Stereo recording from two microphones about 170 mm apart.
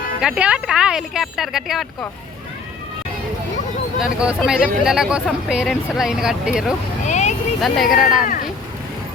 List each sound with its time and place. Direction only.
0.2 s speech: 5° right (ahead or behind)
4.0 s speech: 5° right (ahead or behind)
7.1 s vehicle: 45° left (ahead or behind)
7.6 s speech: centre (ahead or behind)